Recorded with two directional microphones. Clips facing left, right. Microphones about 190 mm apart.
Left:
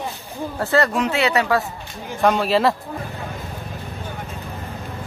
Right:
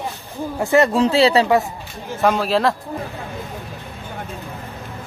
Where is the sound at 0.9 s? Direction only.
30° right (ahead or behind).